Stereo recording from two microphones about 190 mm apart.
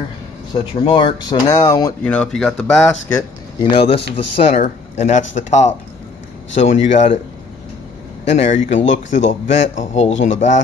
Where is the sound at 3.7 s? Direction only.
30° left (ahead or behind).